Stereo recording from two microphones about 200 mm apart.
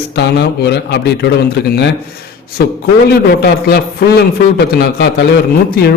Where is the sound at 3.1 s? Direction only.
55° left (ahead or behind).